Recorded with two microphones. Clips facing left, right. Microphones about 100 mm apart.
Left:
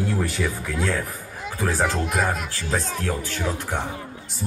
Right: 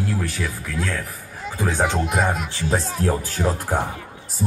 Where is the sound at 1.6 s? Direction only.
Centre (ahead or behind).